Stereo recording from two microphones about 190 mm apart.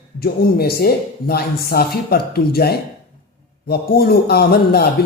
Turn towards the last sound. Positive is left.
turn(degrees=55)  # may be behind; listen again after turning